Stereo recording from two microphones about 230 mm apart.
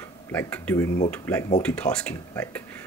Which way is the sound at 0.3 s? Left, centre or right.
Centre.